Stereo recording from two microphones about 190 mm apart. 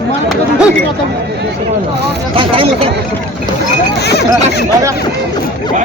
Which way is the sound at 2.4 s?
30° right (ahead or behind).